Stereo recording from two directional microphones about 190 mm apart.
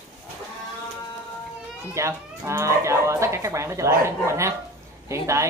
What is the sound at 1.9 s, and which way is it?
Speech, 15° right (ahead or behind).